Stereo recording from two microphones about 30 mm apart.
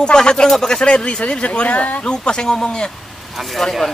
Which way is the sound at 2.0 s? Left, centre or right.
Left.